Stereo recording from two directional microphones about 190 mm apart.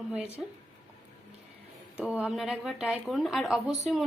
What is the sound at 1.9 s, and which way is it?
A woman's voice, 5° right (ahead or behind).